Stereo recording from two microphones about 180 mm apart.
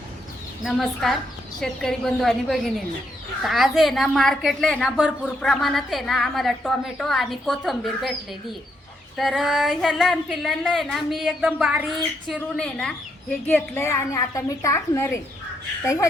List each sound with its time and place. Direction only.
0.6 s a woman's voice: centre (ahead or behind)
9.1 s a woman's voice: centre (ahead or behind)
12.3 s a woman's voice: 5° left (ahead or behind)